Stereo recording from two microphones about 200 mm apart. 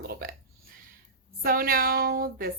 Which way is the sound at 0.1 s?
45° right (ahead or behind).